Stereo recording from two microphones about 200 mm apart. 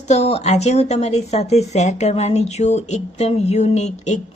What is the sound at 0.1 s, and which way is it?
A woman's voice, 30° left (ahead or behind).